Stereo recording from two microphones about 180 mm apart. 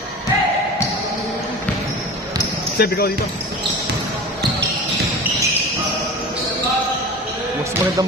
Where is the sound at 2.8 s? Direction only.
60° left (ahead or behind).